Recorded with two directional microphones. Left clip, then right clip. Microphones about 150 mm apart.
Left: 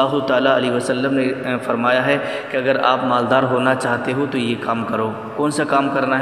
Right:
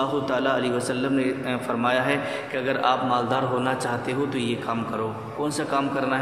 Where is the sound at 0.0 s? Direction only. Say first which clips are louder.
Left 8 dB; 35° left (ahead or behind).